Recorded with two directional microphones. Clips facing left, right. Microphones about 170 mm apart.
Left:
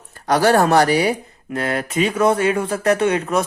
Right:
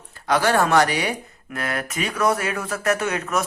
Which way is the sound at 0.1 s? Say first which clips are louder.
Left 5 dB; 40° left (ahead or behind).